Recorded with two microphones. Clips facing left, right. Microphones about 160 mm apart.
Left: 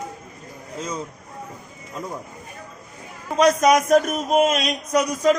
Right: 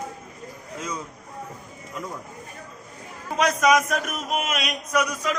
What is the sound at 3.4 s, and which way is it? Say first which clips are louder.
Chant: left 4 dB; 35° left (ahead or behind).